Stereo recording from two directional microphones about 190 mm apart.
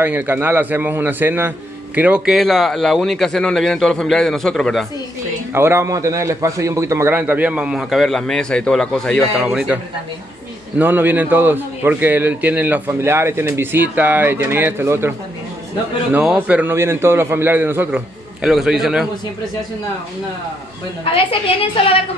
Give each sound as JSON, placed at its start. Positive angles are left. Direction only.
{"t": 0.0, "sound": "a man's voice", "side_deg": -10}
{"t": 5.5, "sound": "a man's voice", "side_deg": -15}
{"t": 10.8, "sound": "a man's voice", "side_deg": -10}
{"t": 21.0, "sound": "a woman's voice", "side_deg": 30}